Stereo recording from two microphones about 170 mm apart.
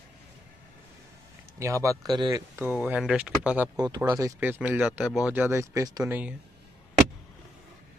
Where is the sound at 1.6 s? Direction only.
20° right (ahead or behind).